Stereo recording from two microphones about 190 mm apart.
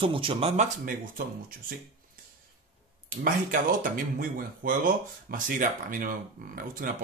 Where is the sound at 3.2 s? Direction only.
45° right (ahead or behind).